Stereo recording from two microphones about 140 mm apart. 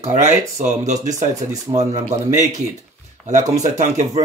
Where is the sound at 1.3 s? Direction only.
25° right (ahead or behind).